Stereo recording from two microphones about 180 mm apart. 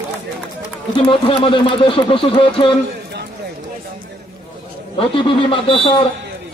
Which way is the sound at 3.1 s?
65° right (ahead or behind).